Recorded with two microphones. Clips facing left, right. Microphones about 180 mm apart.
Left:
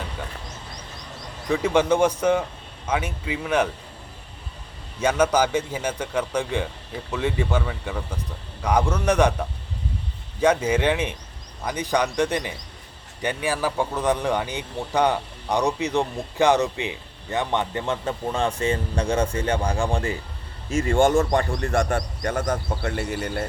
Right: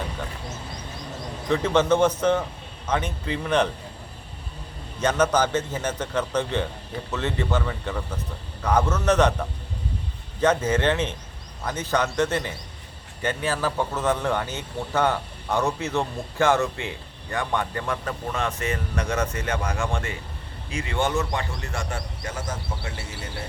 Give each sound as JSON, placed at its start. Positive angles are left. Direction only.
{"t": 1.5, "sound": "speech", "side_deg": 10}
{"t": 4.9, "sound": "speech", "side_deg": 10}
{"t": 10.4, "sound": "speech", "side_deg": 10}
{"t": 20.7, "sound": "speech", "side_deg": 45}
{"t": 21.6, "sound": "speech", "side_deg": 55}
{"t": 22.3, "sound": "speech", "side_deg": 60}